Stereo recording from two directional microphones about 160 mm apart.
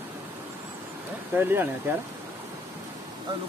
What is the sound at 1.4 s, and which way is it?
Speech, 15° right (ahead or behind).